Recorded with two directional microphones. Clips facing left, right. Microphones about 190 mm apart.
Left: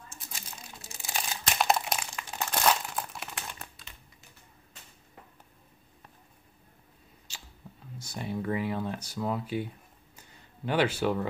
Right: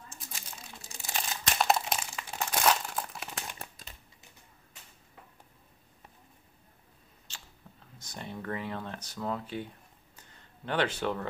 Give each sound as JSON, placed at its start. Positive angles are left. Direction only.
{"t": 1.1, "sound": "crumpling", "side_deg": 0}
{"t": 3.8, "sound": "a sound", "side_deg": -40}
{"t": 7.3, "sound": "squish", "side_deg": 10}
{"t": 7.7, "sound": "computer keyboard", "side_deg": 10}
{"t": 8.0, "sound": "speech", "side_deg": 10}
{"t": 10.1, "sound": "a sound", "side_deg": 10}